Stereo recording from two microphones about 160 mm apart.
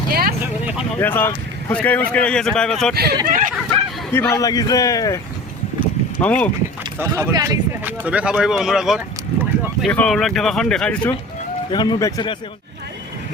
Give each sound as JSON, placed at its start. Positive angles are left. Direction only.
{"t": 0.1, "sound": "vehicle", "side_deg": -75}
{"t": 0.9, "sound": "speech", "side_deg": 15}
{"t": 2.9, "sound": "speech", "side_deg": -80}
{"t": 3.2, "sound": "speech", "side_deg": -60}
{"t": 4.1, "sound": "a man's voice", "side_deg": 15}
{"t": 6.2, "sound": "speech", "side_deg": 10}
{"t": 7.0, "sound": "speech", "side_deg": -15}
{"t": 7.9, "sound": "speech", "side_deg": -10}
{"t": 11.7, "sound": "a man's voice", "side_deg": 25}